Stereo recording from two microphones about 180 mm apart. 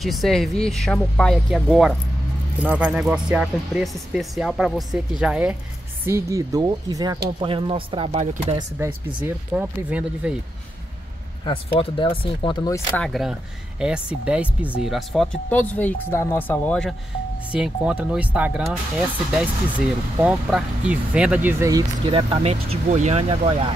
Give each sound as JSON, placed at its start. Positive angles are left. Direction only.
{"t": 0.0, "sound": "speech", "side_deg": 0}
{"t": 6.0, "sound": "speech", "side_deg": -15}
{"t": 8.7, "sound": "speech", "side_deg": -10}
{"t": 11.4, "sound": "speech", "side_deg": 30}
{"t": 13.0, "sound": "speech", "side_deg": 0}
{"t": 17.5, "sound": "speech", "side_deg": -5}
{"t": 22.0, "sound": "speech", "side_deg": -30}